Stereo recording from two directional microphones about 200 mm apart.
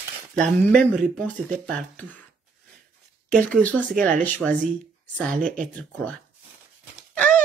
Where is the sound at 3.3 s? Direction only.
5° left (ahead or behind).